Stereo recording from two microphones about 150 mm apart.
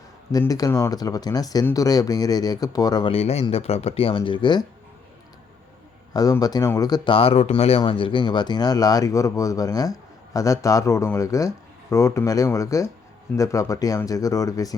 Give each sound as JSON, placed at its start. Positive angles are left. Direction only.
{"t": 0.3, "sound": "speech", "side_deg": 25}
{"t": 3.1, "sound": "speech", "side_deg": 45}
{"t": 6.1, "sound": "speech", "side_deg": 25}